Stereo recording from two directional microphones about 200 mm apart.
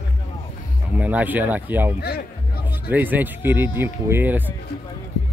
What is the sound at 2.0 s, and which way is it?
Music, 50° left (ahead or behind).